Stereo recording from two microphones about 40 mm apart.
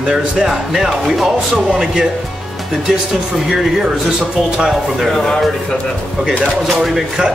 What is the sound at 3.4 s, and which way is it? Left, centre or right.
Speech, centre.